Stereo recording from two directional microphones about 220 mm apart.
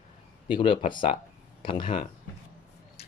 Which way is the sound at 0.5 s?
25° left (ahead or behind).